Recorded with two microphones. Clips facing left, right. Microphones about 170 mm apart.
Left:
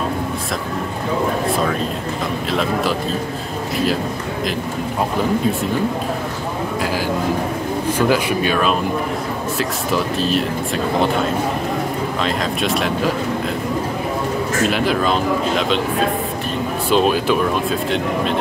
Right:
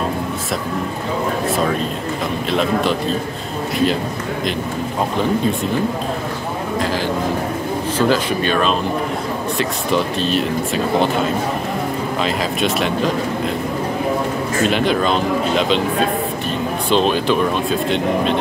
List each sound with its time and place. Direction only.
8.1 s speech: 10° left (ahead or behind)
12.2 s speech: centre (ahead or behind)
14.7 s speech: centre (ahead or behind)
16.9 s speech: 5° left (ahead or behind)